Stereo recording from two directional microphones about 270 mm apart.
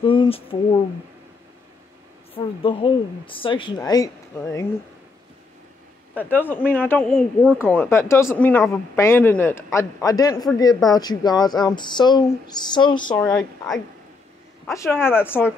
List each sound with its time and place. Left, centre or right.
0.0 s speech: centre
2.3 s speech: centre
6.1 s speech: centre
13.3 s speech: centre